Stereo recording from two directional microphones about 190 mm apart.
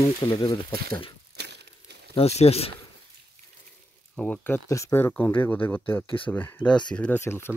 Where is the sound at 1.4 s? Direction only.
60° right (ahead or behind).